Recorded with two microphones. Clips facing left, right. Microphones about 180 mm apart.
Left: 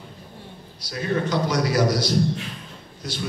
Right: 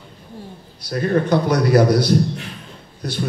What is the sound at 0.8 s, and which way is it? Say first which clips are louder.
A man's voice: right 6 dB; 50° right (ahead or behind).